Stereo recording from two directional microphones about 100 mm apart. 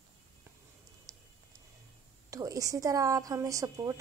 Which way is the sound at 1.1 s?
35° right (ahead or behind).